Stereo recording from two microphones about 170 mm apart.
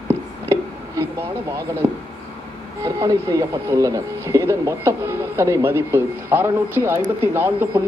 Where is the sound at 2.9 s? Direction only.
20° right (ahead or behind).